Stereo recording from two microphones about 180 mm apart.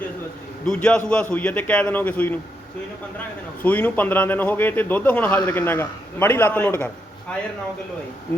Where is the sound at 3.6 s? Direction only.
10° left (ahead or behind).